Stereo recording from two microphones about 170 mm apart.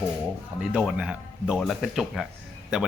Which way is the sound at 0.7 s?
5° right (ahead or behind).